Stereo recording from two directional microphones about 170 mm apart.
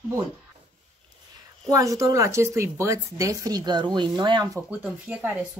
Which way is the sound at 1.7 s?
20° right (ahead or behind).